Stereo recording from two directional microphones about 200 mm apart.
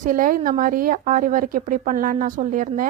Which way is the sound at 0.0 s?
40° right (ahead or behind).